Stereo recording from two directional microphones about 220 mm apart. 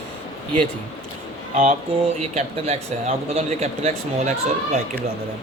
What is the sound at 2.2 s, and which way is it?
Speech, 30° right (ahead or behind).